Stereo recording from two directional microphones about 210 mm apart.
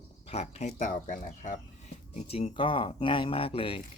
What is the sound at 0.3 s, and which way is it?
Speech, 30° left (ahead or behind).